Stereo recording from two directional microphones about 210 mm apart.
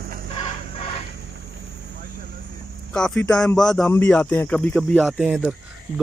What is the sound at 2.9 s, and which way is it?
A man's voice, 5° left (ahead or behind).